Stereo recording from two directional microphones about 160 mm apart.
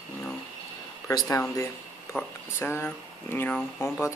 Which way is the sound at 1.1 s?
25° left (ahead or behind).